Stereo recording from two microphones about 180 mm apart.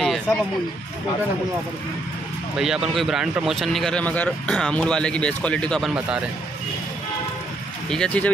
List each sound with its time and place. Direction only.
0.0 s a sound: centre (ahead or behind)
2.5 s speech: 5° right (ahead or behind)
5.9 s speech: 5° right (ahead or behind)
7.9 s speech: 5° left (ahead or behind)